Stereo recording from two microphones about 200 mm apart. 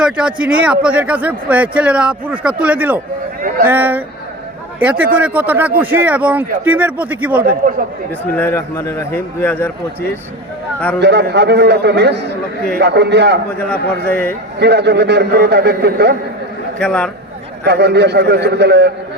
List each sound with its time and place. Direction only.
0.0 s a man's voice: 5° right (ahead or behind)
7.4 s speech: 45° right (ahead or behind)
8.4 s a man's voice: 10° left (ahead or behind)
11.0 s a man's voice: 55° right (ahead or behind)
13.7 s a man's voice: 10° left (ahead or behind)
14.6 s a man's voice: 55° right (ahead or behind)
16.7 s a man's voice: 5° left (ahead or behind)
17.6 s a man's voice: 55° right (ahead or behind)